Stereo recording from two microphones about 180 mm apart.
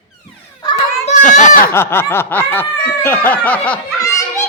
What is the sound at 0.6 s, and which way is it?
Children playing, 25° left (ahead or behind).